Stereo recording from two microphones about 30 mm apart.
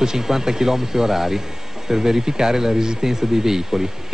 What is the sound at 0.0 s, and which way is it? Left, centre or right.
Speech, centre.